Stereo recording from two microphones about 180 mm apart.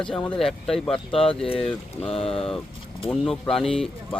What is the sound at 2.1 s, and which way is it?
Speech, 30° left (ahead or behind).